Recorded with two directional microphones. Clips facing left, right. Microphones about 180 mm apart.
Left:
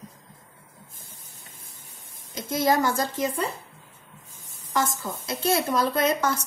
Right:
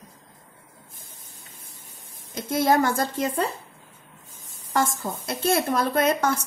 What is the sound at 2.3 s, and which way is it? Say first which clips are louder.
Speech: right 2 dB; 55° right (ahead or behind).